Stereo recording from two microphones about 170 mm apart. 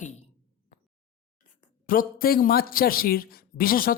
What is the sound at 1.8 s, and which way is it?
Speech, 55° left (ahead or behind).